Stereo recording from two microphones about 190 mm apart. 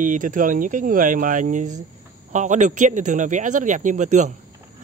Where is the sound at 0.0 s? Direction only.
45° right (ahead or behind).